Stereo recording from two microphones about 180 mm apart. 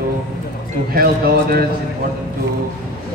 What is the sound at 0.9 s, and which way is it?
Speech, 60° right (ahead or behind).